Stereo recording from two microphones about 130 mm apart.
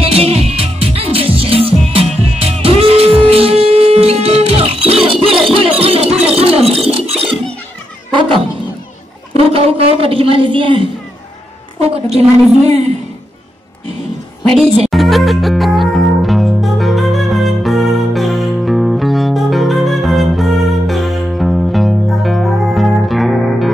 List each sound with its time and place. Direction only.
0.0 s music: 50° right (ahead or behind)
8.1 s cat: 40° right (ahead or behind)
9.3 s a sound: 50° right (ahead or behind)
11.8 s a woman's voice: 55° right (ahead or behind)
14.9 s music: centre (ahead or behind)